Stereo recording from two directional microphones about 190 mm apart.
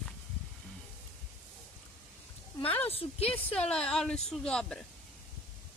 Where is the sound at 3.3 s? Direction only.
5° left (ahead or behind).